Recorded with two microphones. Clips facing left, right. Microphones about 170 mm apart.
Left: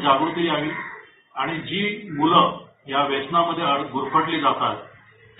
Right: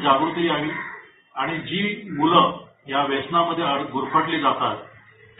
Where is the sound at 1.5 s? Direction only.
Centre (ahead or behind).